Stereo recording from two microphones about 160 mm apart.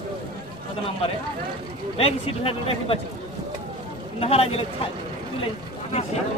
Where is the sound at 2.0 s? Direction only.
35° left (ahead or behind).